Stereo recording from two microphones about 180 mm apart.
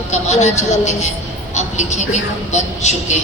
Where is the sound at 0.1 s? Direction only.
40° left (ahead or behind).